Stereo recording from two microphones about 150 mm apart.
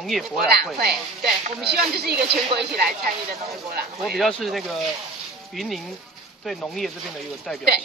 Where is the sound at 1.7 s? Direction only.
90° right.